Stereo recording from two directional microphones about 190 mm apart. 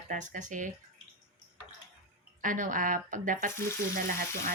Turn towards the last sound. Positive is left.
turn(degrees=-50)  # may be behind; listen again after turning